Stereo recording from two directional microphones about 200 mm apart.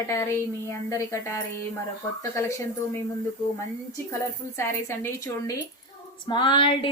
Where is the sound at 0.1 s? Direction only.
15° left (ahead or behind).